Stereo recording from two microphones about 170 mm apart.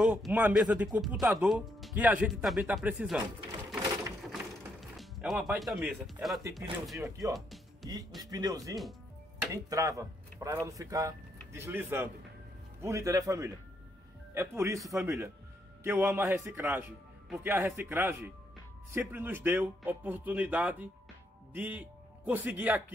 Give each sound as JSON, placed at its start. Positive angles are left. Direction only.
{"t": 0.0, "sound": "speech", "side_deg": -5}
{"t": 4.2, "sound": "music", "side_deg": 0}
{"t": 5.6, "sound": "speech", "side_deg": 0}
{"t": 8.2, "sound": "a man's voice", "side_deg": -20}